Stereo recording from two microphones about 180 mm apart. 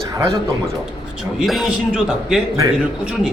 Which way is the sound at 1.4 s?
Centre (ahead or behind).